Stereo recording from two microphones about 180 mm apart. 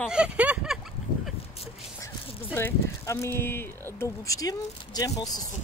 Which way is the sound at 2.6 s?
15° left (ahead or behind).